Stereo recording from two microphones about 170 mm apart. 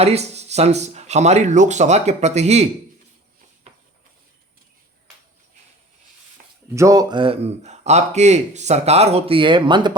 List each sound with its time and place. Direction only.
0.0 s speech: 40° right (ahead or behind)
6.7 s speech: 20° right (ahead or behind)